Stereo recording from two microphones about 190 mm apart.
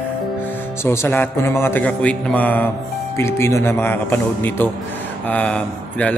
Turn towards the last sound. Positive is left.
turn(degrees=5)  # may be behind; listen again after turning